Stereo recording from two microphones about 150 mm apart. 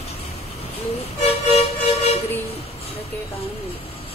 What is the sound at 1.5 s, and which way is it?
Vehicle, 45° left (ahead or behind).